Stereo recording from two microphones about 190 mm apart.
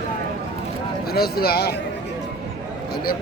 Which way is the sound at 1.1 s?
55° left (ahead or behind).